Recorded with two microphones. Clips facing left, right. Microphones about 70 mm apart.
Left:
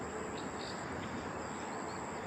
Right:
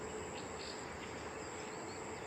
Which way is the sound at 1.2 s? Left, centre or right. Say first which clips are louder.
Left 4 dB; left.